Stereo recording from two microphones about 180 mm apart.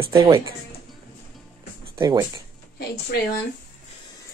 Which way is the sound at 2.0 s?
25° right (ahead or behind).